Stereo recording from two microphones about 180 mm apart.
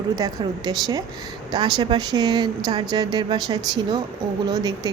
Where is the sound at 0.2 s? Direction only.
20° right (ahead or behind).